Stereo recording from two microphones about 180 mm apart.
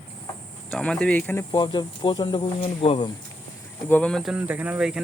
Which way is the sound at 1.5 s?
25° left (ahead or behind).